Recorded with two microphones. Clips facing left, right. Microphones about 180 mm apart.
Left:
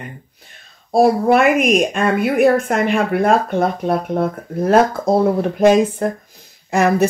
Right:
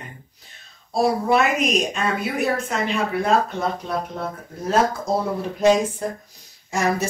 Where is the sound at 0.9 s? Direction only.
55° left (ahead or behind).